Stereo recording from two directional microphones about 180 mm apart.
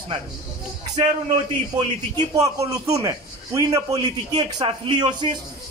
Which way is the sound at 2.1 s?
20° right (ahead or behind).